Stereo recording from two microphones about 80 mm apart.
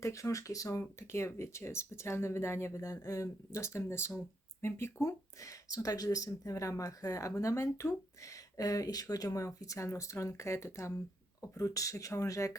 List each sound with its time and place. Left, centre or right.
0.0 s speech: left
2.9 s speech: left